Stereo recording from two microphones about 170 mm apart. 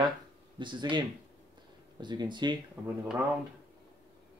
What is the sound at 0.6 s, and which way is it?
Speech, 30° right (ahead or behind).